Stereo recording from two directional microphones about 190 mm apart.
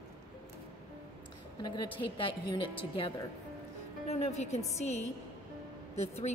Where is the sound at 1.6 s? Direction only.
25° left (ahead or behind).